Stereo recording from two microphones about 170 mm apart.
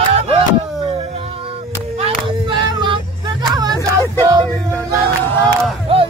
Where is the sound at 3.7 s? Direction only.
15° left (ahead or behind).